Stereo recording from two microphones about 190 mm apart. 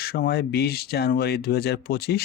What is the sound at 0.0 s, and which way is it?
Speech, 55° left (ahead or behind).